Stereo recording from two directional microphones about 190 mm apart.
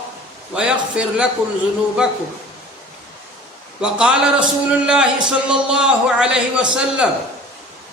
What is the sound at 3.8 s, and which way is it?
A man's voice, 5° right (ahead or behind).